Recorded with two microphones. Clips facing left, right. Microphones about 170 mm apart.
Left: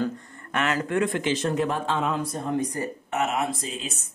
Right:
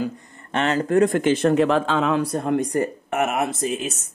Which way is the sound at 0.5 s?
30° right (ahead or behind).